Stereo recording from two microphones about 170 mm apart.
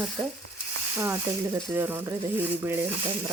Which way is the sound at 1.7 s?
15° right (ahead or behind).